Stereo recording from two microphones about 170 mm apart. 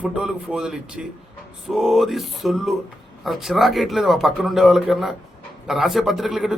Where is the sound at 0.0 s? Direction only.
5° right (ahead or behind).